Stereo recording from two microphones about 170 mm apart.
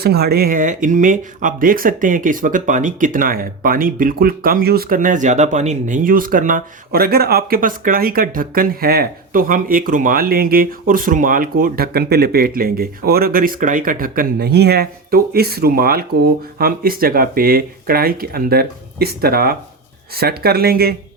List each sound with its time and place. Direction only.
0.0 s speech: 65° right (ahead or behind)